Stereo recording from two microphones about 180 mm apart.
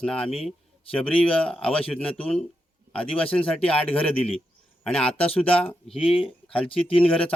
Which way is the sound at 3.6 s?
5° left (ahead or behind).